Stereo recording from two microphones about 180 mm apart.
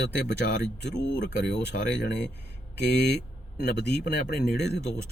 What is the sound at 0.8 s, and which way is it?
A man's voice, 75° left (ahead or behind).